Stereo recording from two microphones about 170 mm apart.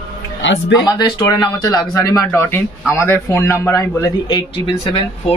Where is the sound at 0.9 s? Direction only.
25° left (ahead or behind).